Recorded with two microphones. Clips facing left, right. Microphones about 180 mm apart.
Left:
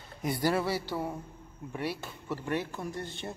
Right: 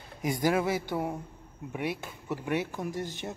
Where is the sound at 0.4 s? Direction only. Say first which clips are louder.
Right 2 dB; 15° right (ahead or behind).